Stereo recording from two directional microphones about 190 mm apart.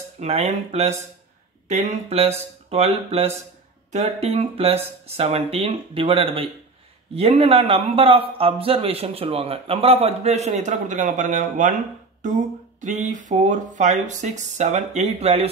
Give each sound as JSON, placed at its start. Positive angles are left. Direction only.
{"t": 0.2, "sound": "a man's voice", "side_deg": -35}
{"t": 12.8, "sound": "a man's voice", "side_deg": -40}